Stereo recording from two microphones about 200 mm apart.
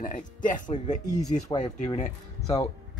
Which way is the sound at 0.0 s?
40° left (ahead or behind).